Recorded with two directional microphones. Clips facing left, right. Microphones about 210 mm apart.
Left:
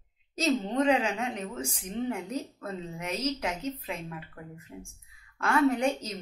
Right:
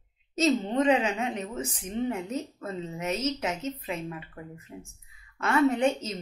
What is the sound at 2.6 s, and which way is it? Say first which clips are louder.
Speech: right 3 dB; 5° right (ahead or behind).